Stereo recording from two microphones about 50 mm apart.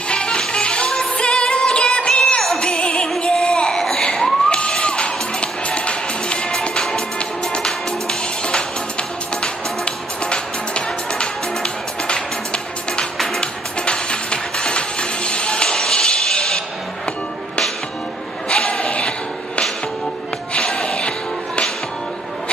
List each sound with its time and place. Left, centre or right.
0.1 s music: centre
2.2 s music: centre
2.8 s music: centre
3.2 s child singing: centre
3.7 s music: centre
13.4 s music: centre
18.5 s a sound: centre
20.5 s music: centre